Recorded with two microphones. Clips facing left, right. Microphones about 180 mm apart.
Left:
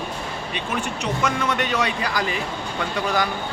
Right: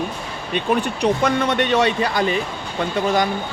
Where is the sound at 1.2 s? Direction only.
30° right (ahead or behind).